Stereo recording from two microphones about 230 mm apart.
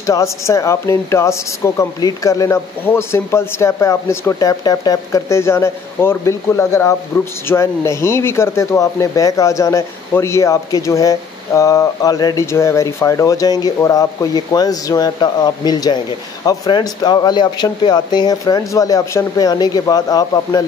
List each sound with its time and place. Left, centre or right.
0.0 s speech: centre